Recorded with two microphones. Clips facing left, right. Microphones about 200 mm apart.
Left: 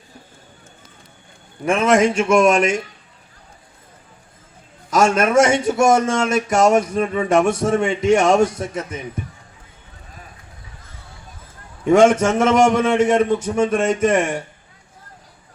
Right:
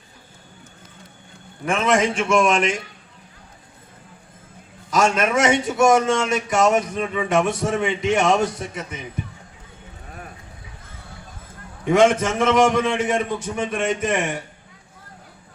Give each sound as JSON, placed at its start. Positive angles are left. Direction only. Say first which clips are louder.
{"t": 1.6, "sound": "a man's voice", "louder": "left 4 dB", "side_deg": 45}
{"t": 4.9, "sound": "a man's voice", "louder": "left 3 dB", "side_deg": 45}
{"t": 11.9, "sound": "a man's voice", "louder": "left 4 dB", "side_deg": 45}